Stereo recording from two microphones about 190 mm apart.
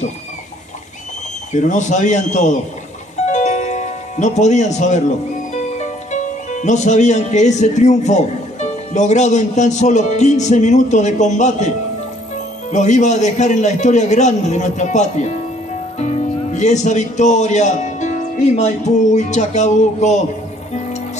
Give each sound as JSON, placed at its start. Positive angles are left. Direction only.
{"t": 1.5, "sound": "a man's voice", "side_deg": 40}
{"t": 12.7, "sound": "a man's voice", "side_deg": 40}